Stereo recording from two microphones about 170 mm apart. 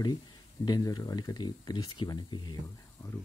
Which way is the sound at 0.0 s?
25° left (ahead or behind).